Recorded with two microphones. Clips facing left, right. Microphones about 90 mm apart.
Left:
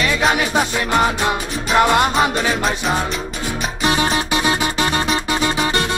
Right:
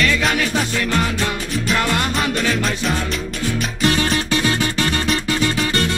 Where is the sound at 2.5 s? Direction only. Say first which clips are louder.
Left 1 dB; 35° left (ahead or behind).